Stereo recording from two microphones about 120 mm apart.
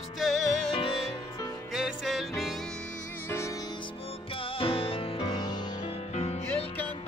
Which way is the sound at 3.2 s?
20° left (ahead or behind).